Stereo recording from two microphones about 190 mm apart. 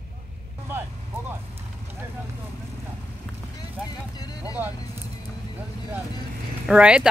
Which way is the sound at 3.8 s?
20° left (ahead or behind).